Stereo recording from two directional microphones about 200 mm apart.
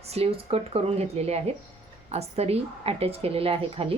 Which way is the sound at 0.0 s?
30° right (ahead or behind).